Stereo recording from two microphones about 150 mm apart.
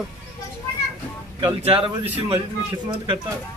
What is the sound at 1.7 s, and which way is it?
Speech, 40° right (ahead or behind).